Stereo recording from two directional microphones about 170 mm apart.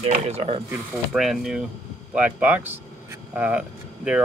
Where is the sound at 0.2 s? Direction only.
35° right (ahead or behind).